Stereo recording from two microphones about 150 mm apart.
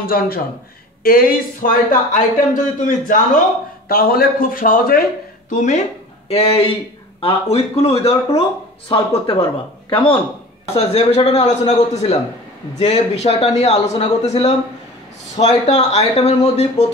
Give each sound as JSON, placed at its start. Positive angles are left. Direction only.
{"t": 0.0, "sound": "speech", "side_deg": 75}
{"t": 3.9, "sound": "a man's voice", "side_deg": 80}
{"t": 5.5, "sound": "speech", "side_deg": 55}
{"t": 6.2, "sound": "speech", "side_deg": 40}
{"t": 10.9, "sound": "a man's voice", "side_deg": 45}